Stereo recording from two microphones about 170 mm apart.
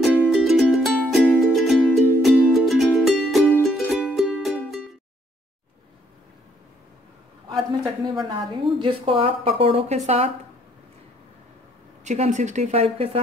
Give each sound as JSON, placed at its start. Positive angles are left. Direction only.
{"t": 0.0, "sound": "music", "side_deg": 10}
{"t": 0.3, "sound": "music", "side_deg": 0}
{"t": 1.9, "sound": "music", "side_deg": 10}
{"t": 2.2, "sound": "music", "side_deg": 0}
{"t": 7.8, "sound": "a woman's voice", "side_deg": -25}
{"t": 12.0, "sound": "speech", "side_deg": -45}